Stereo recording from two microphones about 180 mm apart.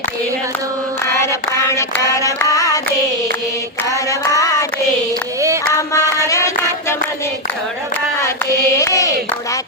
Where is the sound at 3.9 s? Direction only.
20° left (ahead or behind).